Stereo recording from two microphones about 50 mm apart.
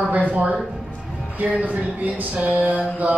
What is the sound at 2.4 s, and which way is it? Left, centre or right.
Speech, right.